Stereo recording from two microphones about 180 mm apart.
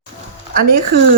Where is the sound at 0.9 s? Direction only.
60° right (ahead or behind).